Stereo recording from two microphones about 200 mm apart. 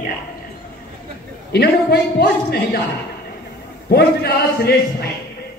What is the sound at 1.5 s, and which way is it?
Speech, 50° left (ahead or behind).